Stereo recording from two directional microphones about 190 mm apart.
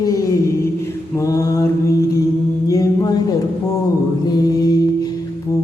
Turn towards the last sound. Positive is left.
turn(degrees=20)  # may be behind; listen again after turning